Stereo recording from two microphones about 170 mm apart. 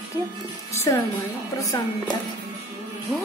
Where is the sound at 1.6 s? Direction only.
20° left (ahead or behind).